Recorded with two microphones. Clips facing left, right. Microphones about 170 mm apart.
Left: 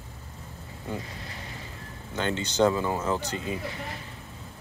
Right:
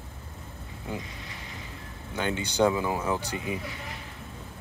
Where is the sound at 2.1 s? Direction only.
10° right (ahead or behind).